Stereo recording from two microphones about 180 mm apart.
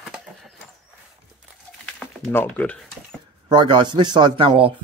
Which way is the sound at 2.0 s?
10° left (ahead or behind).